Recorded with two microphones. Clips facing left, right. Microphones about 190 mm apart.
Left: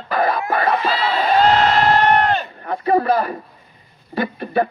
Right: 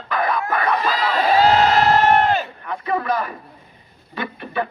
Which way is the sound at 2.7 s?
40° left (ahead or behind).